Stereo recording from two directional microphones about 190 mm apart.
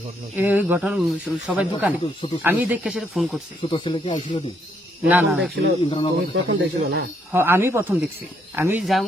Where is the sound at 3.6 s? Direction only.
25° left (ahead or behind).